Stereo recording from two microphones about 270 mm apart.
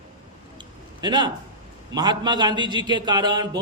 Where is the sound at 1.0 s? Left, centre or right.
Centre.